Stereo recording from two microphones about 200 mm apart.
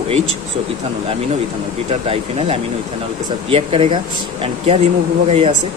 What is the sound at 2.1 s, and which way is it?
Speech, 30° right (ahead or behind).